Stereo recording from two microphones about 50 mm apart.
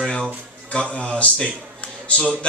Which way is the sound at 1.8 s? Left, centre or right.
Left.